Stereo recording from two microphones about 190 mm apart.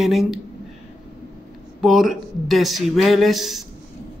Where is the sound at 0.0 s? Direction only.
Centre (ahead or behind).